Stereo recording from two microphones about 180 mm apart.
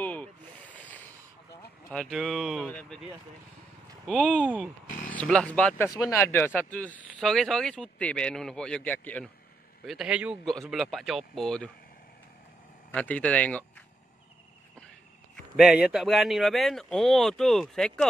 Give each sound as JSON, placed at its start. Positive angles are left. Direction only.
{"t": 0.0, "sound": "snake", "side_deg": 10}
{"t": 1.9, "sound": "speech", "side_deg": 5}
{"t": 4.1, "sound": "speech", "side_deg": 5}
{"t": 4.8, "sound": "a sound", "side_deg": 50}
{"t": 5.1, "sound": "speech", "side_deg": 5}
{"t": 9.8, "sound": "speech", "side_deg": -5}
{"t": 12.9, "sound": "speech", "side_deg": 5}
{"t": 15.3, "sound": "speech", "side_deg": -5}